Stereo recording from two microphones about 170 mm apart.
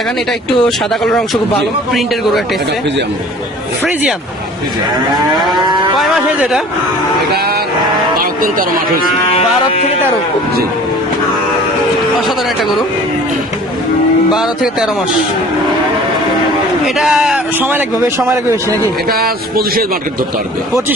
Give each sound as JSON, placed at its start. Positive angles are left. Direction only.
{"t": 0.6, "sound": "a man's voice", "side_deg": 5}
{"t": 5.6, "sound": "a man's voice", "side_deg": -25}
{"t": 6.0, "sound": "a man's voice", "side_deg": -5}
{"t": 7.3, "sound": "vehicle", "side_deg": -65}
{"t": 8.2, "sound": "speech", "side_deg": -55}
{"t": 9.3, "sound": "speech", "side_deg": 35}
{"t": 12.2, "sound": "a man's voice", "side_deg": 0}
{"t": 14.3, "sound": "a man's voice", "side_deg": 0}
{"t": 16.8, "sound": "a man's voice", "side_deg": 0}
{"t": 19.0, "sound": "speech", "side_deg": -65}